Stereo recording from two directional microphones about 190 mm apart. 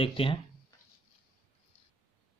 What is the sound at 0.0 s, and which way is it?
Speech, 30° left (ahead or behind).